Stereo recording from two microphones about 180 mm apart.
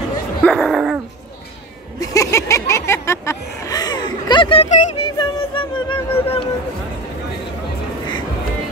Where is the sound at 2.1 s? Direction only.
15° left (ahead or behind).